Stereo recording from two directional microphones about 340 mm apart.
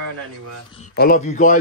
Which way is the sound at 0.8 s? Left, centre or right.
Left.